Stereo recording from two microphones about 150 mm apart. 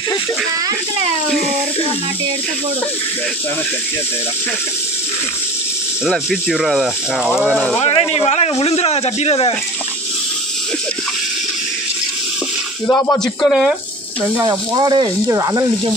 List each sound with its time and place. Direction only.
6.0 s speech: centre (ahead or behind)
7.8 s speech: 40° left (ahead or behind)
12.8 s speech: 15° left (ahead or behind); by 13.7 s centre (ahead or behind)
14.4 s speech: 25° right (ahead or behind)